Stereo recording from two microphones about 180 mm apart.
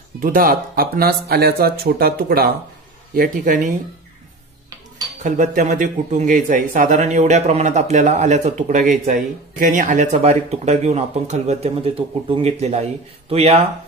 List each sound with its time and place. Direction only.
0.2 s speech: 50° right (ahead or behind)
5.2 s a man's voice: 45° right (ahead or behind)
10.1 s a man's voice: 35° right (ahead or behind)